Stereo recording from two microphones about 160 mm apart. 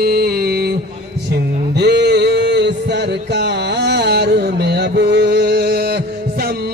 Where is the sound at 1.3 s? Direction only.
90° right.